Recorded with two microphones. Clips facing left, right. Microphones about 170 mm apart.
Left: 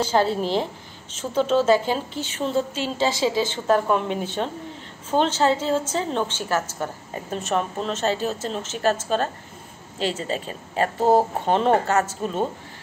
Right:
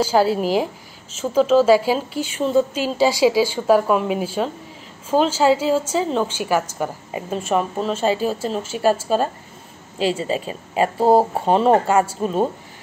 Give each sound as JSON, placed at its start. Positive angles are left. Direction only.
{"t": 0.0, "sound": "a woman's voice", "side_deg": -5}
{"t": 11.0, "sound": "speech", "side_deg": -35}
{"t": 11.6, "sound": "a woman's voice", "side_deg": -10}